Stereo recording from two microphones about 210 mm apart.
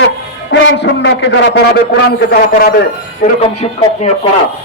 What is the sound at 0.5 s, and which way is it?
A man's voice, 60° left (ahead or behind).